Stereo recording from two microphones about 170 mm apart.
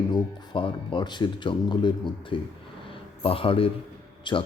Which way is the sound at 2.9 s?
30° left (ahead or behind).